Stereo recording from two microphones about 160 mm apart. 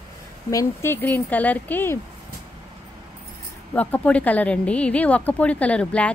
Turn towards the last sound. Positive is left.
turn(degrees=10)  # may be behind; listen again after turning